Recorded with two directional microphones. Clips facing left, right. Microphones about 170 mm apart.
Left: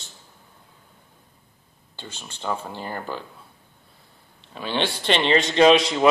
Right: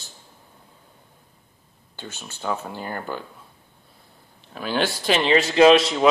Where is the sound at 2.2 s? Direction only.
5° right (ahead or behind).